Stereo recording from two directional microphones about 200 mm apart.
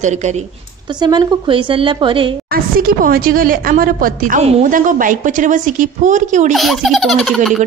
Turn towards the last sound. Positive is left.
turn(degrees=0)  # may be behind; listen again after turning